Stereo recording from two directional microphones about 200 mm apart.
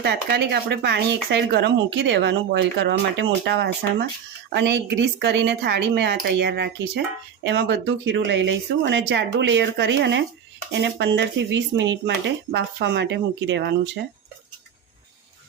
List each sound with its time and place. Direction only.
0.0 s speech: 55° right (ahead or behind)